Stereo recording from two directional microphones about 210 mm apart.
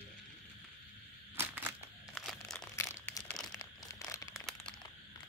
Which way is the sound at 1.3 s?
10° right (ahead or behind).